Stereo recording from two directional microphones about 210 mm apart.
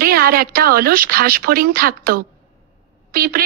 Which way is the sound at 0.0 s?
45° right (ahead or behind).